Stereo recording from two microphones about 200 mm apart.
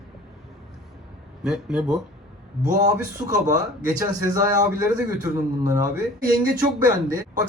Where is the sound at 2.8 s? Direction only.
15° right (ahead or behind).